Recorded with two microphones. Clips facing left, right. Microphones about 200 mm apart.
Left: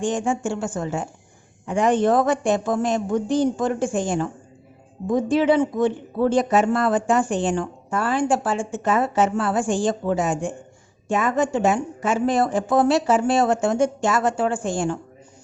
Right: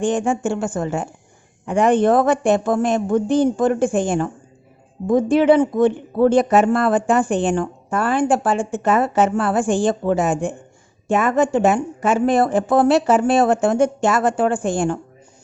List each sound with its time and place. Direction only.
0.0 s speech: 60° right (ahead or behind)